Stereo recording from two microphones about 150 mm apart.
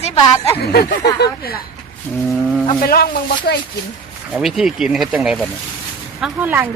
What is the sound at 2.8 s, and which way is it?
Speech, 85° left.